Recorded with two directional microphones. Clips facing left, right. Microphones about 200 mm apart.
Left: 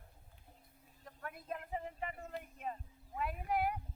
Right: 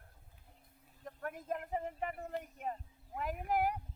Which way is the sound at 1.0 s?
50° right (ahead or behind).